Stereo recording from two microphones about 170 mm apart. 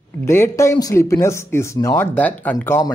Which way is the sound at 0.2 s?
15° left (ahead or behind).